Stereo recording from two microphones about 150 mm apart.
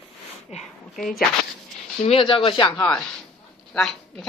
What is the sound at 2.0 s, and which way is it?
Speech, 35° left (ahead or behind).